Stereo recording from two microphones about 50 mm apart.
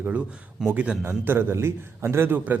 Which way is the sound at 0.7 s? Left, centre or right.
Right.